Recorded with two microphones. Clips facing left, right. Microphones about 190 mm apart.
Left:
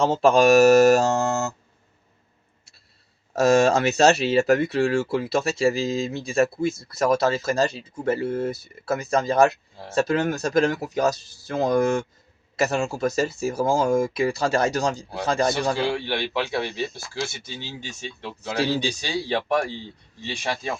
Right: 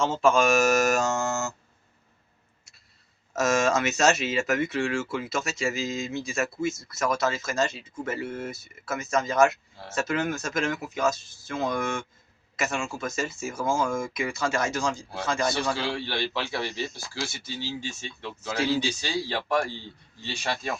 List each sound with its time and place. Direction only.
0.0 s speech: 35° left (ahead or behind)
3.3 s speech: 35° left (ahead or behind)
15.7 s a man's voice: 15° left (ahead or behind)
16.6 s speech: 60° left (ahead or behind)
17.4 s speech: 20° left (ahead or behind)
18.5 s speech: 35° left (ahead or behind)
20.4 s a man's voice: 15° left (ahead or behind)